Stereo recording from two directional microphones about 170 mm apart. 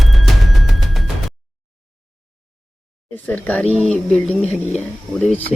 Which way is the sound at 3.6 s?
40° right (ahead or behind).